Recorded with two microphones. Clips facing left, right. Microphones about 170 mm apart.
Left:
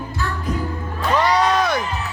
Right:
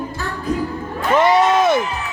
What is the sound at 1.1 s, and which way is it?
Music, 25° right (ahead or behind).